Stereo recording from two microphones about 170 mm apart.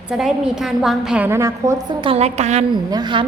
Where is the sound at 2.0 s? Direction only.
35° right (ahead or behind).